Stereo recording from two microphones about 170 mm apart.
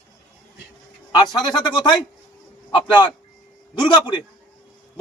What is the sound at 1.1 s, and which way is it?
Speech, 25° left (ahead or behind).